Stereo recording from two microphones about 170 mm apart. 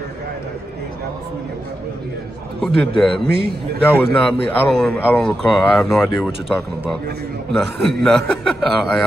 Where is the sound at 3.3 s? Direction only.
70° right (ahead or behind).